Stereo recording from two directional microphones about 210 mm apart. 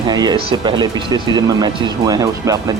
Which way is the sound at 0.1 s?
20° right (ahead or behind).